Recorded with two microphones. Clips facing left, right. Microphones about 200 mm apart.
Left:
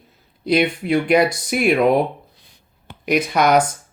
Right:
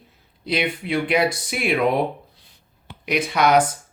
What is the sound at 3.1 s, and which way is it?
Speech, 45° left (ahead or behind).